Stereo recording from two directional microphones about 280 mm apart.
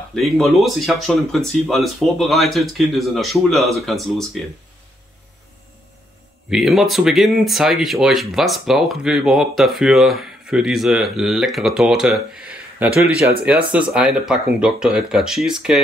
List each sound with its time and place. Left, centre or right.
0.1 s speech: centre
6.5 s speech: centre
13.2 s speech: right
13.5 s speech: centre